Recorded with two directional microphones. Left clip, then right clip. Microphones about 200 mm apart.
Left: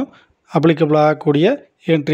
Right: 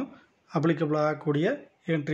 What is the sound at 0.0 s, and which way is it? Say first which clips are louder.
Speech: left 11 dB; 40° left (ahead or behind).